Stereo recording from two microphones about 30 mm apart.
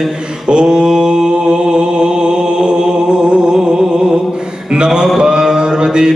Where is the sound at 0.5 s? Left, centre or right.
Right.